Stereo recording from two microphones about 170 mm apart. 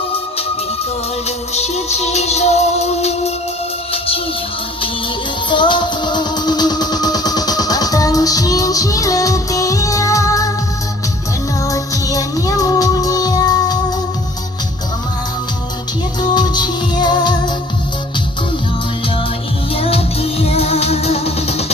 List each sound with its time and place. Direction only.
1.5 s music: 40° left (ahead or behind)
5.5 s music: 30° left (ahead or behind)
11.6 s music: 20° left (ahead or behind)
16.2 s music: 25° left (ahead or behind)
19.7 s music: 35° left (ahead or behind)